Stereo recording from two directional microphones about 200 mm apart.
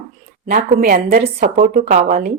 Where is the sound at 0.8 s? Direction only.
45° right (ahead or behind).